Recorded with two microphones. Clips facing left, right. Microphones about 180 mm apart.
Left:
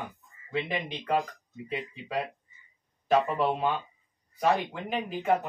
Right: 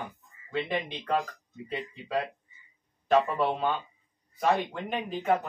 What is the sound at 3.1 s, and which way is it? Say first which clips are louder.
Speech: even; 10° left (ahead or behind).